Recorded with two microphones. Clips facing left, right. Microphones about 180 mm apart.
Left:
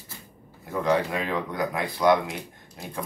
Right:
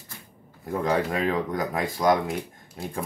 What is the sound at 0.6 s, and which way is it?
Speech, 45° right (ahead or behind).